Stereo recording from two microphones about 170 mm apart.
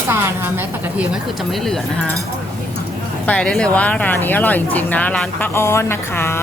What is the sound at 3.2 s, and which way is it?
Speech, 5° left (ahead or behind).